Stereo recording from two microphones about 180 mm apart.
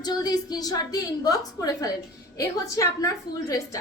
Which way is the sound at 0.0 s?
20° left (ahead or behind).